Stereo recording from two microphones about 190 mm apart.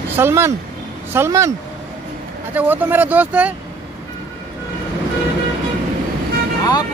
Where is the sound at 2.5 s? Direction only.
10° right (ahead or behind).